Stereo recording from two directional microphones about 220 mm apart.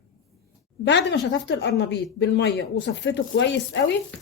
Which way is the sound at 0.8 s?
50° left (ahead or behind).